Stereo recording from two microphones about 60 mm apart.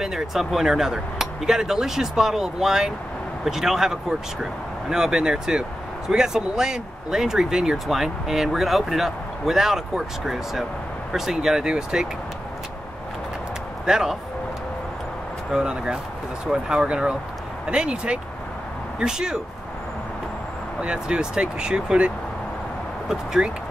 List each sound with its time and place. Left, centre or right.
0.0 s speech: centre
13.8 s speech: centre
15.5 s speech: centre
20.8 s speech: centre